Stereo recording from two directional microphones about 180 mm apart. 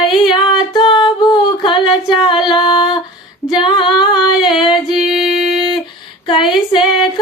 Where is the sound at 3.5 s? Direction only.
25° left (ahead or behind).